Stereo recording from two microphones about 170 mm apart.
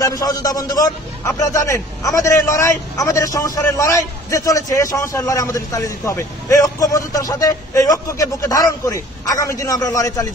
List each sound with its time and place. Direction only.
0.0 s a man's voice: 20° left (ahead or behind)